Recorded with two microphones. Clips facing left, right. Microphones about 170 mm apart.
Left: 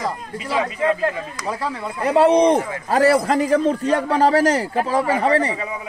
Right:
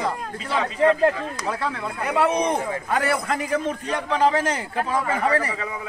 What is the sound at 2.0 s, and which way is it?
A man's voice, 30° left (ahead or behind).